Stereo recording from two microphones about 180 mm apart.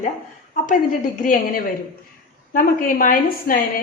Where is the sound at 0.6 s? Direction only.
45° left (ahead or behind).